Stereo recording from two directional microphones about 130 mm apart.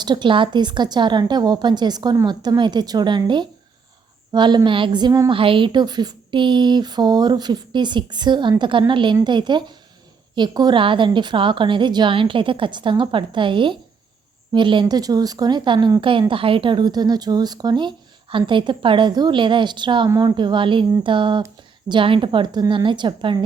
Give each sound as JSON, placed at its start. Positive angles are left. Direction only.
{"t": 0.0, "sound": "speech", "side_deg": -35}
{"t": 5.3, "sound": "speech", "side_deg": -40}